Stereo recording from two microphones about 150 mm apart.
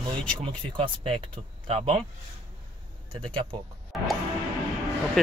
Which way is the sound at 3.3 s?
35° right (ahead or behind).